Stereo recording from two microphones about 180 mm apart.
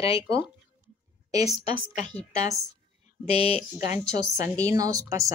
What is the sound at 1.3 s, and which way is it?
Speech, 20° right (ahead or behind).